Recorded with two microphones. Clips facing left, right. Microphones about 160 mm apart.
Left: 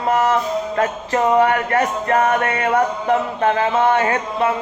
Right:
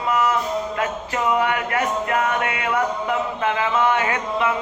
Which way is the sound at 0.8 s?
40° left (ahead or behind).